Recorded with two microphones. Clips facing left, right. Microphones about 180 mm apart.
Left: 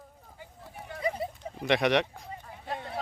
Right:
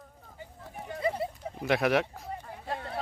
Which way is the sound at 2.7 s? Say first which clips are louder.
Even; centre (ahead or behind).